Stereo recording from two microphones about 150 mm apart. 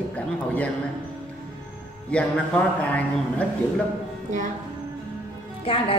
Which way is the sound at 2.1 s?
5° left (ahead or behind).